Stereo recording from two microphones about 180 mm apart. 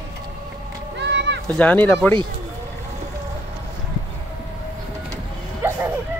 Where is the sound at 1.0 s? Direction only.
75° right (ahead or behind).